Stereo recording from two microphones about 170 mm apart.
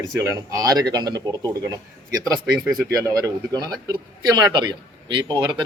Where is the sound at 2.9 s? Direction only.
20° right (ahead or behind).